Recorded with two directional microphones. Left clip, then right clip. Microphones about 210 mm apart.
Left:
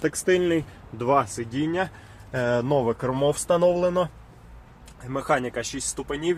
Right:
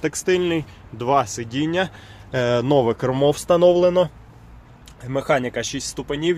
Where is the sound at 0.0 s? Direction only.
5° right (ahead or behind).